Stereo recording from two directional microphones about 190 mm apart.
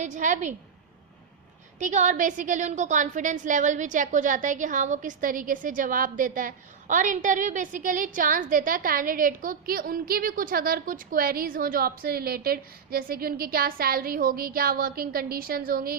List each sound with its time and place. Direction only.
0.0 s a woman's voice: 40° right (ahead or behind)
1.8 s a woman's voice: 40° right (ahead or behind)